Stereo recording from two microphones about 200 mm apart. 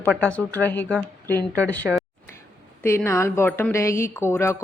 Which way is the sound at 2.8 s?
10° left (ahead or behind).